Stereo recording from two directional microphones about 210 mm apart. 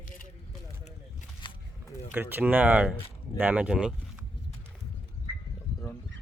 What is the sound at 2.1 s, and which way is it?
Speech, 10° right (ahead or behind).